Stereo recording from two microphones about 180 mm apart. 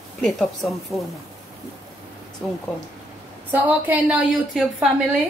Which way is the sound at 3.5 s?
10° right (ahead or behind).